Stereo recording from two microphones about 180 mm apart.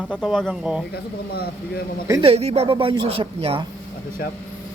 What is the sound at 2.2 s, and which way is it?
A woman's voice, 35° right (ahead or behind).